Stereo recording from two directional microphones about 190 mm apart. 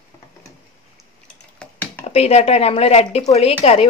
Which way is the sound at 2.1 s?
30° left (ahead or behind).